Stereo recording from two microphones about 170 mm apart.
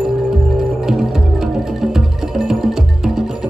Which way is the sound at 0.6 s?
Centre (ahead or behind).